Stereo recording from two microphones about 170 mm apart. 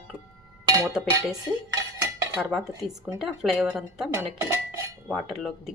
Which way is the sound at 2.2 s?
5° right (ahead or behind).